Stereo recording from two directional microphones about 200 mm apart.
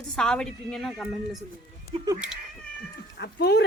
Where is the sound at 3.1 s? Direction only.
55° left (ahead or behind).